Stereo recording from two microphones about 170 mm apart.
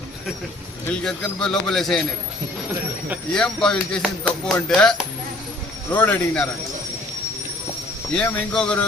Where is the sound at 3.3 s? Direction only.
5° left (ahead or behind).